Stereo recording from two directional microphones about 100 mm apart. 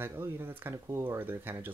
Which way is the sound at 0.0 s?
25° right (ahead or behind).